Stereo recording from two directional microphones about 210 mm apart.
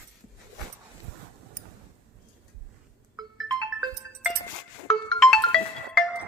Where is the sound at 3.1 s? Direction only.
20° right (ahead or behind).